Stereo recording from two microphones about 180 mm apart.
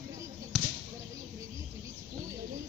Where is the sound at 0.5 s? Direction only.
Centre (ahead or behind).